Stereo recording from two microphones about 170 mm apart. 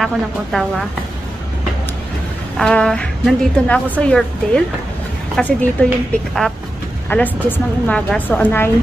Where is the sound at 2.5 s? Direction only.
5° left (ahead or behind).